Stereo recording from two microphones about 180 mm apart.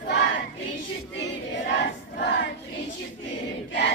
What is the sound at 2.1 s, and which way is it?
Choir, 70° left (ahead or behind).